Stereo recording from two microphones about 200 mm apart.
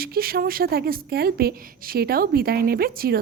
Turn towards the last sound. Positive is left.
turn(degrees=-50)  # may be behind; listen again after turning